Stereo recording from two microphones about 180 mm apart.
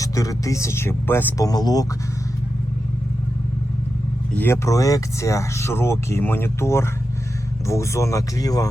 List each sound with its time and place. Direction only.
0.0 s speech: 20° left (ahead or behind)
4.4 s speech: 15° left (ahead or behind)